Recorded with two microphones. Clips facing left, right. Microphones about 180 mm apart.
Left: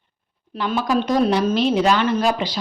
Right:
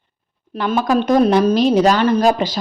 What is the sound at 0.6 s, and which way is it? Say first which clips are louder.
A woman's voice: right 4 dB; 50° right (ahead or behind).